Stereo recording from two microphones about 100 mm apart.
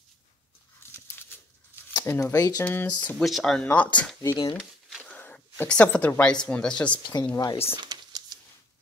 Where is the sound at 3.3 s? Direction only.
Centre (ahead or behind).